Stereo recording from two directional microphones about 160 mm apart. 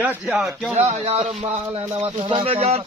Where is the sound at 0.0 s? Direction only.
10° right (ahead or behind).